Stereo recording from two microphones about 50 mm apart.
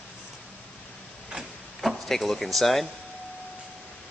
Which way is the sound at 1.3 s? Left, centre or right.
Centre.